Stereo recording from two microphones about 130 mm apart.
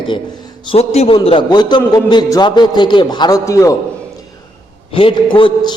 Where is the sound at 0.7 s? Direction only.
55° left (ahead or behind).